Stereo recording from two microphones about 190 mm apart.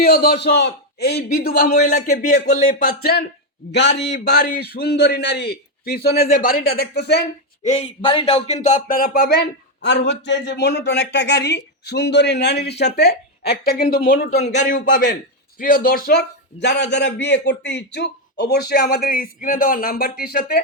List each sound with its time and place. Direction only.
0.0 s a man's voice: 55° left (ahead or behind)
1.5 s speech: 50° left (ahead or behind)
3.7 s a man's voice: 65° left (ahead or behind)
7.6 s speech: 35° left (ahead or behind); by 9.4 s 50° left (ahead or behind)
9.8 s a man's voice: 65° left (ahead or behind); by 14.4 s 50° left (ahead or behind)
14.4 s a man's voice: 40° left (ahead or behind)